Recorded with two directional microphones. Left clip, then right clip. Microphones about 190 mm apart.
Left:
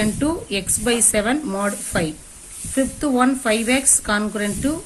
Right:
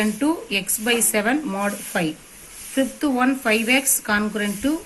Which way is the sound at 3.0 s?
45° left (ahead or behind).